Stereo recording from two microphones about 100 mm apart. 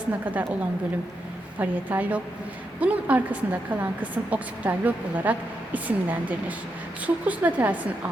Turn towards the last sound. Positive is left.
turn(degrees=-15)  # may be behind; listen again after turning